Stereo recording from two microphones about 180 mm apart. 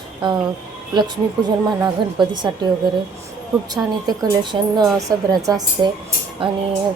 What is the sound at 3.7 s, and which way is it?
A woman's voice, 20° right (ahead or behind).